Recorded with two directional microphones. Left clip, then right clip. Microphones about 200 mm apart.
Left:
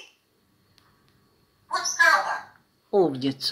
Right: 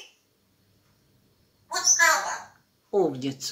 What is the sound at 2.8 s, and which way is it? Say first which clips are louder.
Speech: left 3 dB; 25° left (ahead or behind).